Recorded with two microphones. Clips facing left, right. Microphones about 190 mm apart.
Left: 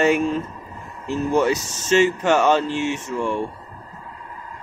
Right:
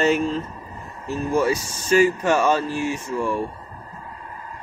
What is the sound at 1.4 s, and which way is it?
Speech, 25° left (ahead or behind).